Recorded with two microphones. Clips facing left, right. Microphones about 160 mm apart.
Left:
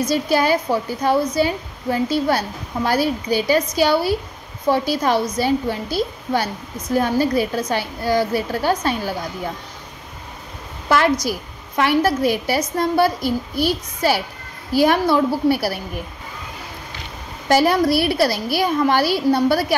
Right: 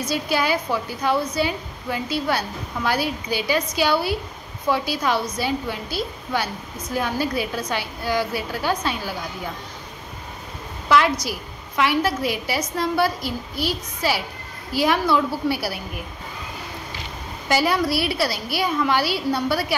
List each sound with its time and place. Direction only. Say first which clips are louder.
0.0 s a woman's voice: left 5 dB; 40° left (ahead or behind)
10.9 s a woman's voice: left 2 dB; 45° left (ahead or behind)
17.5 s a woman's voice: left 5 dB; 50° left (ahead or behind)